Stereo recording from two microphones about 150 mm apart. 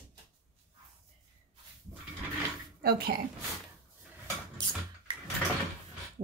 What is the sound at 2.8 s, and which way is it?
Speech, 90° right.